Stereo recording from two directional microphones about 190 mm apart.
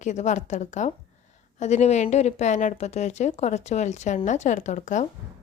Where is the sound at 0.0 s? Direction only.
40° left (ahead or behind).